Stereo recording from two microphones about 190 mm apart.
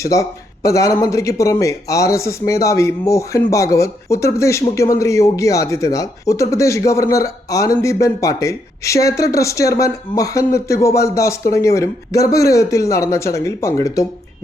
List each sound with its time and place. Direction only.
0.0 s speech: 15° left (ahead or behind)